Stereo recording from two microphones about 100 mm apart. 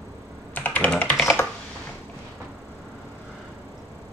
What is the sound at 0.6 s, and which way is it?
Computer keyboard, 15° left (ahead or behind).